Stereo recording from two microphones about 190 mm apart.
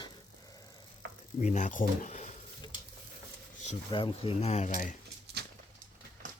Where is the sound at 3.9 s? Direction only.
25° left (ahead or behind).